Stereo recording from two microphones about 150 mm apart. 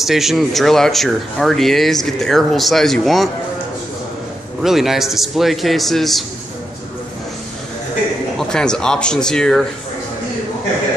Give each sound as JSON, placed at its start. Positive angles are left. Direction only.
{"t": 0.0, "sound": "speech", "side_deg": 0}
{"t": 4.6, "sound": "speech", "side_deg": 0}
{"t": 8.4, "sound": "speech", "side_deg": 5}